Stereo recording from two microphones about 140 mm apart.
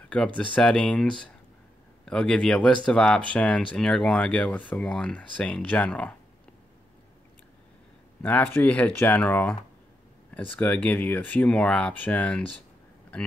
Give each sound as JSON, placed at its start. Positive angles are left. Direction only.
{"t": 0.1, "sound": "speech", "side_deg": 5}
{"t": 8.2, "sound": "speech", "side_deg": 15}